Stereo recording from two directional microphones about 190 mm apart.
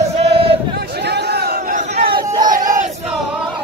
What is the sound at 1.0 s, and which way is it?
Crowd, 60° right (ahead or behind).